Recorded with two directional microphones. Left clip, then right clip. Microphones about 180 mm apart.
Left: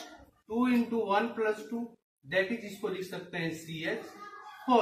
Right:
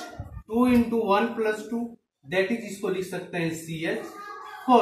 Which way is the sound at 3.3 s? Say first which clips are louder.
Right 6 dB; 5° left (ahead or behind).